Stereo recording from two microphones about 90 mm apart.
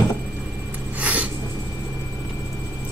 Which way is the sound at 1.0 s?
15° right (ahead or behind).